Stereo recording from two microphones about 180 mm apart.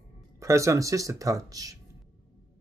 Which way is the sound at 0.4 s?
15° right (ahead or behind).